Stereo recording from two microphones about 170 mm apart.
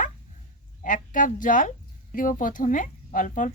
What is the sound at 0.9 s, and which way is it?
A woman's voice, 50° left (ahead or behind).